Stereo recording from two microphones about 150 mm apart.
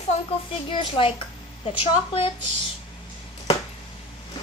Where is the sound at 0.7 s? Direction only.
35° left (ahead or behind).